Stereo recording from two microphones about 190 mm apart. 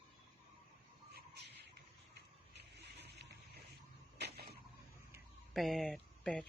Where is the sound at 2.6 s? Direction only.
60° right (ahead or behind).